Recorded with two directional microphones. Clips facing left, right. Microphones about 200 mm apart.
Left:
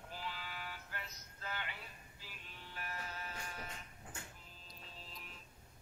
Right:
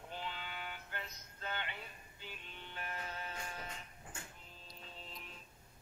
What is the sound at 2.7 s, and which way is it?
Music, 25° right (ahead or behind).